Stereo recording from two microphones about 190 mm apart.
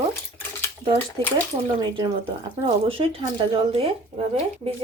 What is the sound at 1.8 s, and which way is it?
A woman's voice, 25° right (ahead or behind).